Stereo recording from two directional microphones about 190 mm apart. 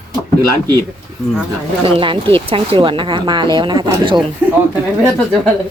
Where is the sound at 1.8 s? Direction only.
25° right (ahead or behind).